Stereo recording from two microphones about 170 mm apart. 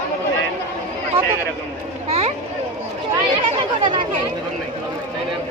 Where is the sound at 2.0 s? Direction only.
40° right (ahead or behind).